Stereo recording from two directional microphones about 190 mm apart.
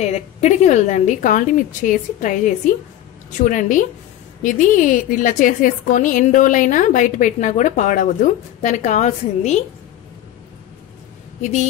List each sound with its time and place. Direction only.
0.0 s a woman's voice: 35° left (ahead or behind)